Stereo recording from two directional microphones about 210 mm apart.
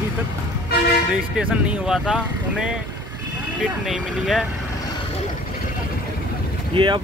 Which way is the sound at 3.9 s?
Centre (ahead or behind).